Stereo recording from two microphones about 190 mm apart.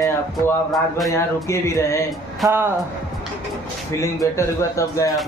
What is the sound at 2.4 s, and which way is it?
Speech, 10° right (ahead or behind).